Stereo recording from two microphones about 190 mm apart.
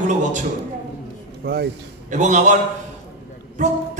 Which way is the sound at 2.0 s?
40° right (ahead or behind).